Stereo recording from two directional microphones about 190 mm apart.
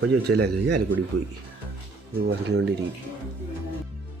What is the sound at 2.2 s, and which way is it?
Speech, 65° right (ahead or behind).